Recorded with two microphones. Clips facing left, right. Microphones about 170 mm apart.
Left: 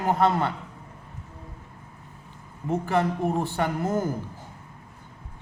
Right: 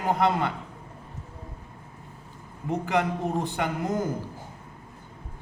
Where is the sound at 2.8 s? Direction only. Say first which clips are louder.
Left 1 dB; 15° right (ahead or behind).